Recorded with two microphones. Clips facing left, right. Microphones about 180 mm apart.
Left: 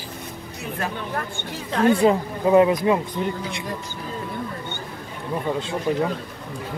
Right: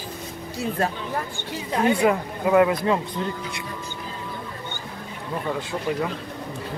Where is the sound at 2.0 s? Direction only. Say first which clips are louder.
Left 3 dB; 25° left (ahead or behind).